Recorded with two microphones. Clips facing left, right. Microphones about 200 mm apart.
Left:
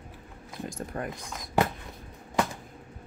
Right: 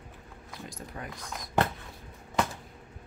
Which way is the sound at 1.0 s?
50° left (ahead or behind).